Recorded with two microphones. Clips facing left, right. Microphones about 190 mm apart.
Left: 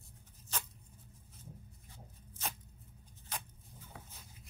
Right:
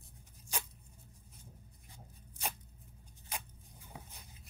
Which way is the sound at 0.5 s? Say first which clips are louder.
Right 1 dB; 15° right (ahead or behind).